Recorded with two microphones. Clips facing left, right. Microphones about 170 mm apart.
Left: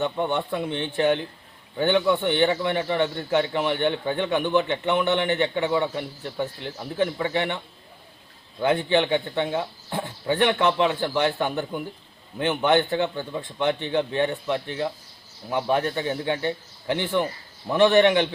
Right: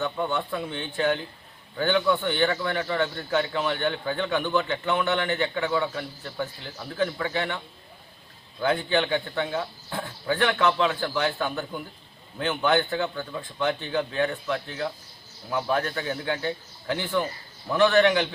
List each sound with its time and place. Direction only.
0.0 s a man's voice: 20° left (ahead or behind)
8.6 s a man's voice: 20° left (ahead or behind)